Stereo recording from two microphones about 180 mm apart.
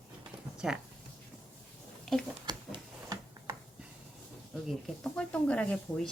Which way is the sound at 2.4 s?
20° right (ahead or behind).